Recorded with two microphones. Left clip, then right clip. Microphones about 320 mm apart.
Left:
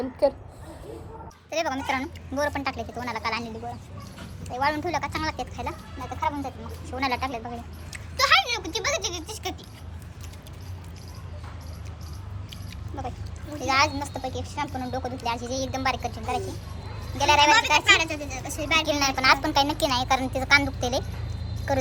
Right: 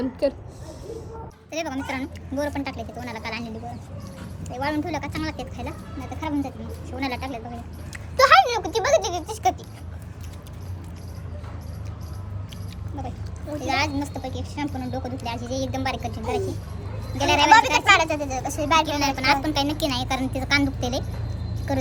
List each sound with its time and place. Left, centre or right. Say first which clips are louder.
0.0 s a child's voice: left 1 dB; centre
1.5 s a child's voice: left 3 dB; centre
4.5 s a child's voice: left 1 dB; centre
7.9 s speech: right 6 dB; centre
13.6 s speech: left 2 dB; centre
17.8 s speech: right 3 dB; centre
18.9 s speech: left 1 dB; centre